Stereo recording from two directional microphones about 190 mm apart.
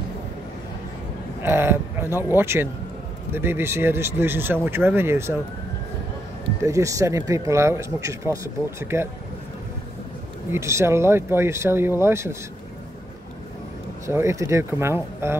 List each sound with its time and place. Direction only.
1.4 s speech: 10° right (ahead or behind)
6.6 s speech: 15° right (ahead or behind)
10.5 s speech: 15° right (ahead or behind)
14.0 s speech: 15° right (ahead or behind)